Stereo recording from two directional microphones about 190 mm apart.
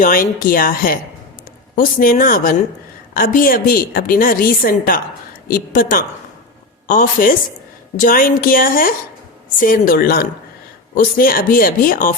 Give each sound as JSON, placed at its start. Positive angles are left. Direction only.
{"t": 0.0, "sound": "a woman's voice", "side_deg": 45}